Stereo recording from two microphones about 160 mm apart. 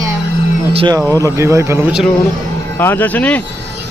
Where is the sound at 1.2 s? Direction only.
15° right (ahead or behind).